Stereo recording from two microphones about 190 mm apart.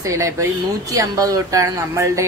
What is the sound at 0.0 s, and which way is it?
Speech, 15° right (ahead or behind).